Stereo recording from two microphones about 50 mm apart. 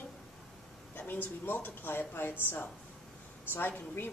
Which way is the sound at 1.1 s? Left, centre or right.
Left.